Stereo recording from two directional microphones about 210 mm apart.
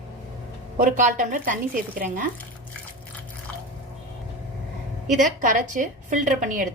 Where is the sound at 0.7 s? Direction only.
40° right (ahead or behind).